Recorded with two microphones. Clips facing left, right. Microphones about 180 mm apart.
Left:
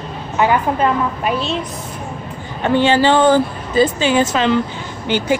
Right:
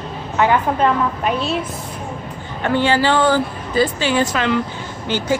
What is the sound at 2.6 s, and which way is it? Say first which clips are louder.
Speech: left 3 dB; 20° left (ahead or behind).